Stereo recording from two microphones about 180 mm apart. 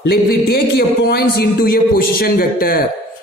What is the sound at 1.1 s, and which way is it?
A woman's voice, 60° left (ahead or behind).